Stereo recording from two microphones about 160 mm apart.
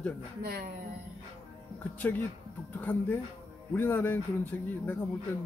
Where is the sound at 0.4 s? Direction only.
75° right (ahead or behind).